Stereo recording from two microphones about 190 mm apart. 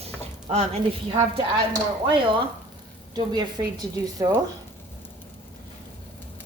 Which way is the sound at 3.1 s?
20° right (ahead or behind).